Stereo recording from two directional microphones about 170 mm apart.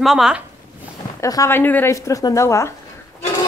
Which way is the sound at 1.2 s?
20° left (ahead or behind).